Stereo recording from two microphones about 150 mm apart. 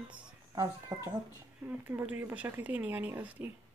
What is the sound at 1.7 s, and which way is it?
Speech, 10° right (ahead or behind).